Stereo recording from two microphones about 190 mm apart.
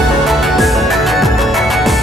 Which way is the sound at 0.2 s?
Centre (ahead or behind).